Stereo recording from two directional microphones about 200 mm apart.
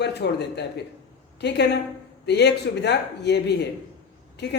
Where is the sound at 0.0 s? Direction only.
55° left (ahead or behind).